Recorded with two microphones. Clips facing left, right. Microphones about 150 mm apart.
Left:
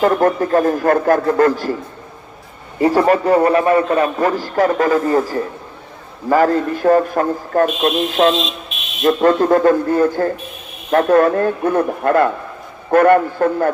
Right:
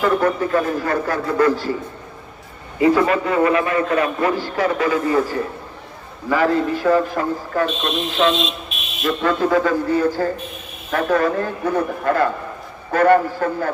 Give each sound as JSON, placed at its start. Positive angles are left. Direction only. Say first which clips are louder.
{"t": 0.0, "sound": "a man's voice", "louder": "left 4 dB", "side_deg": 45}
{"t": 2.8, "sound": "a man's voice", "louder": "left 3 dB", "side_deg": 40}
{"t": 8.4, "sound": "a sound", "louder": "left 1 dB", "side_deg": 0}
{"t": 9.0, "sound": "a man's voice", "louder": "left 6 dB", "side_deg": 50}